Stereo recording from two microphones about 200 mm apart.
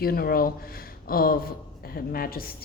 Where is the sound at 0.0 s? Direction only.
50° left (ahead or behind).